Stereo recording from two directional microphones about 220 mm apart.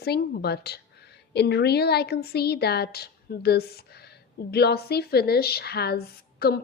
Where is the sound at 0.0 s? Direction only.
45° left (ahead or behind).